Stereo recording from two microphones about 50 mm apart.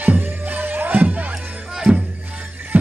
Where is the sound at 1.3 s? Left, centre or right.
Centre.